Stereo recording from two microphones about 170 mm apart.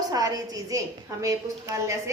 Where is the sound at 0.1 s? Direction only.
20° right (ahead or behind).